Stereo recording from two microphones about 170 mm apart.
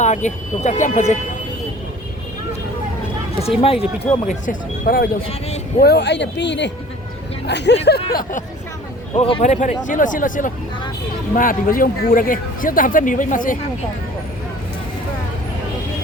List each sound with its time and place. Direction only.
0.0 s speech: 45° left (ahead or behind)
3.6 s speech: 35° left (ahead or behind)
4.4 s speech: 60° left (ahead or behind)
5.8 s speech: 75° left (ahead or behind)
8.1 s speech: 55° left (ahead or behind)
9.1 s speech: 35° left (ahead or behind); by 13.6 s 50° left (ahead or behind)